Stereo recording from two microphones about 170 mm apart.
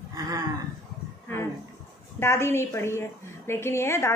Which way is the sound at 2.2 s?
15° left (ahead or behind).